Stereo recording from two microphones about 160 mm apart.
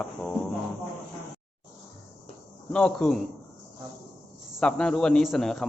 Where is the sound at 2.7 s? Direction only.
5° left (ahead or behind).